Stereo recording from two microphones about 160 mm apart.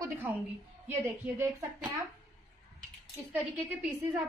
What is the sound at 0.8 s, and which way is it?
Speech, 15° right (ahead or behind).